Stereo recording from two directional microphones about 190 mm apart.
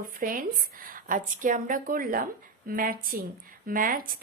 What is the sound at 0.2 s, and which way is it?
A woman's voice, 45° right (ahead or behind).